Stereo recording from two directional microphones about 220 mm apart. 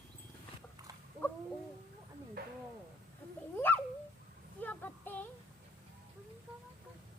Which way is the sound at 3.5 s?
10° left (ahead or behind).